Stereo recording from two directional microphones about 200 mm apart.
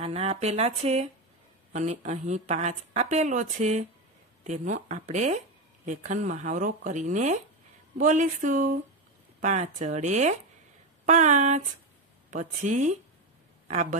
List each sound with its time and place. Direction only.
0.0 s a woman's voice: 30° right (ahead or behind)